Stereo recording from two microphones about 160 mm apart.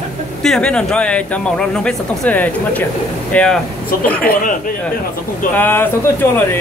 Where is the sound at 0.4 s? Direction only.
5° left (ahead or behind).